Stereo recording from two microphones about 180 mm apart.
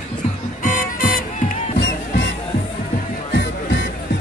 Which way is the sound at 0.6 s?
45° left (ahead or behind).